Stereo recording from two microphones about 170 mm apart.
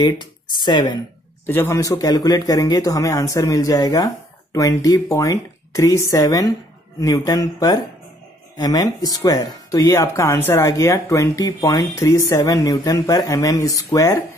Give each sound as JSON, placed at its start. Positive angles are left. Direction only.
{"t": 0.7, "sound": "a man's voice", "side_deg": 25}
{"t": 1.4, "sound": "a man's voice", "side_deg": 15}